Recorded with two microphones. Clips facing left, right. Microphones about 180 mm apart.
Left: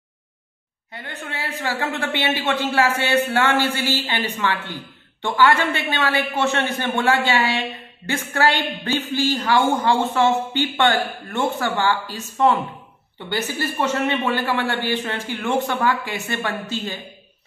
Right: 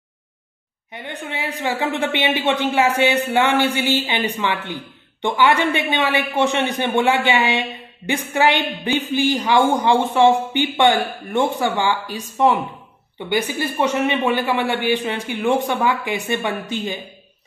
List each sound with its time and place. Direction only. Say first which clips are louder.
0.9 s a woman's voice: right 3 dB; 15° right (ahead or behind)